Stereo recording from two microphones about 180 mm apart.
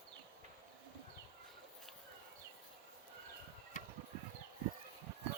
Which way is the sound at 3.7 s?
45° left (ahead or behind).